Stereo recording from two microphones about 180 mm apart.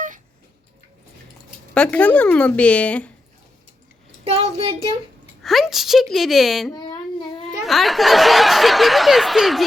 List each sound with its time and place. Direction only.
1.7 s a woman's voice: 5° left (ahead or behind)
4.2 s speech: 35° right (ahead or behind)
5.4 s speech: centre (ahead or behind)
6.7 s child singing: 25° left (ahead or behind)
7.6 s speech: centre (ahead or behind)